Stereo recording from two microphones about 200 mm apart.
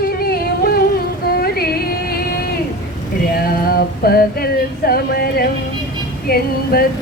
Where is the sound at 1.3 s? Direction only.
50° left (ahead or behind).